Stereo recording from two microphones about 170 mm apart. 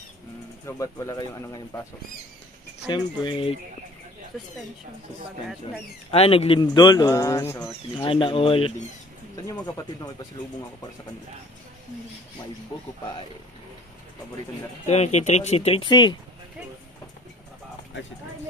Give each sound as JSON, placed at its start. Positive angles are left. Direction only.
{"t": 0.7, "sound": "a man's voice", "side_deg": 20}
{"t": 2.9, "sound": "a man's voice", "side_deg": 30}
{"t": 6.1, "sound": "a man's voice", "side_deg": 35}
{"t": 8.0, "sound": "speech", "side_deg": 30}
{"t": 9.5, "sound": "a man's voice", "side_deg": 20}
{"t": 14.9, "sound": "speech", "side_deg": 40}